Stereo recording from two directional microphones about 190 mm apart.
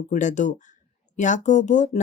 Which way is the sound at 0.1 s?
40° left (ahead or behind).